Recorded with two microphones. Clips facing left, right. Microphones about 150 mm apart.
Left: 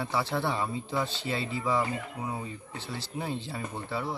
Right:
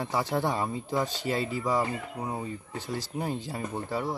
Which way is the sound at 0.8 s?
15° right (ahead or behind).